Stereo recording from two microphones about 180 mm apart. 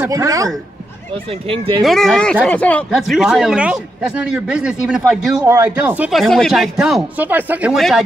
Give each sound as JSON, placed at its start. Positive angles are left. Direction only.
{"t": 0.0, "sound": "speech", "side_deg": -20}
{"t": 1.1, "sound": "speech", "side_deg": -30}
{"t": 1.8, "sound": "a man's voice", "side_deg": 0}
{"t": 5.5, "sound": "a man's voice", "side_deg": -15}